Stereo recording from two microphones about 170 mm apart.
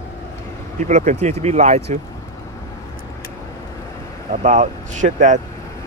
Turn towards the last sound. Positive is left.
turn(degrees=-45)  # may be behind; listen again after turning